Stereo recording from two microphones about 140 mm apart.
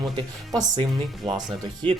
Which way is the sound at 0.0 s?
30° right (ahead or behind).